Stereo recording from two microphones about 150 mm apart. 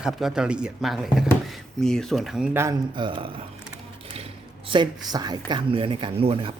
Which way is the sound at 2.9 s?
35° right (ahead or behind).